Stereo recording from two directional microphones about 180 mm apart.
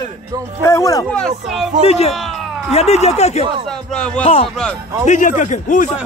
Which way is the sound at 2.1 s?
Centre (ahead or behind).